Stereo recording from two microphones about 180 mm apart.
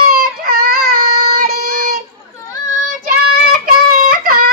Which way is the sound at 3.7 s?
50° right (ahead or behind).